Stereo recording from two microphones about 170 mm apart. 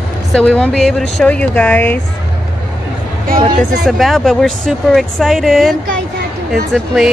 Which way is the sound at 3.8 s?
Centre (ahead or behind).